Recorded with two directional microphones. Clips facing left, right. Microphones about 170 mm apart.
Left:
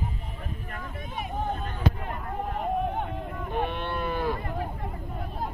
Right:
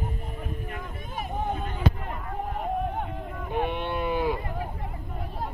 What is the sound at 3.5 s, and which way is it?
Cattle, 15° right (ahead or behind).